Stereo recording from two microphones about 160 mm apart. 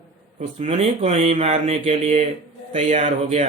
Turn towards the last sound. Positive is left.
turn(degrees=-45)  # may be behind; listen again after turning